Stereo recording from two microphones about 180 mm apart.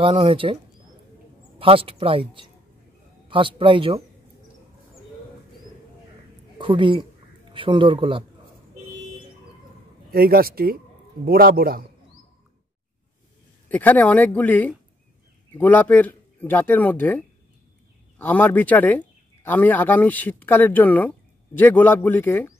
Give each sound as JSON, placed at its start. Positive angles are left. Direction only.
{"t": 0.0, "sound": "a man's voice", "side_deg": -30}
{"t": 1.6, "sound": "a man's voice", "side_deg": -30}
{"t": 6.6, "sound": "a man's voice", "side_deg": -25}
{"t": 10.1, "sound": "speech", "side_deg": -55}
{"t": 13.7, "sound": "speech", "side_deg": 10}